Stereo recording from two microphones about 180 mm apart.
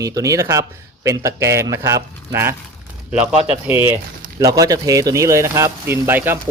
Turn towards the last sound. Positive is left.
turn(degrees=-10)  # may be behind; listen again after turning